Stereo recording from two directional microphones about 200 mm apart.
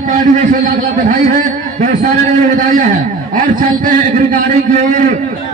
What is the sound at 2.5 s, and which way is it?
A man's voice, 40° right (ahead or behind).